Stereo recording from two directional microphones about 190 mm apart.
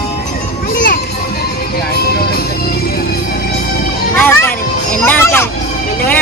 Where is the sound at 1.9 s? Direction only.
55° left (ahead or behind).